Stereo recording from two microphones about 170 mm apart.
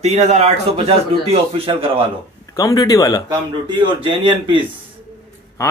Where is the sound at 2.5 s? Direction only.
20° left (ahead or behind).